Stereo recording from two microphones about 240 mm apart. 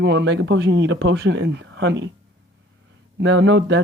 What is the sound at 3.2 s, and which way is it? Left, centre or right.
Speech, right.